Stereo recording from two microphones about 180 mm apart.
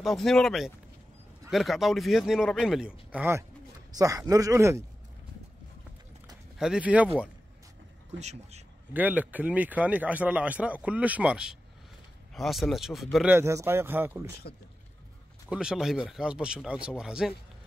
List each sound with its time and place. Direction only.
0.0 s a man's voice: centre (ahead or behind); by 4.8 s 15° right (ahead or behind)
6.6 s speech: 5° right (ahead or behind)
8.2 s a man's voice: 40° right (ahead or behind)
8.9 s a man's voice: 10° right (ahead or behind)
13.3 s speech: 15° right (ahead or behind)
15.5 s a man's voice: 5° right (ahead or behind)